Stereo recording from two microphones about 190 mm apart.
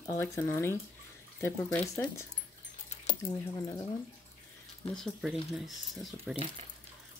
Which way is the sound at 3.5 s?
20° left (ahead or behind).